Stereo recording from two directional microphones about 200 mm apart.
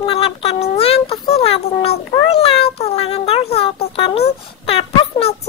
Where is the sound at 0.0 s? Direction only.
30° left (ahead or behind).